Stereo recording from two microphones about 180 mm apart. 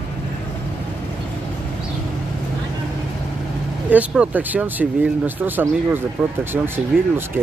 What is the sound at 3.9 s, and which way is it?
Speech, 10° right (ahead or behind).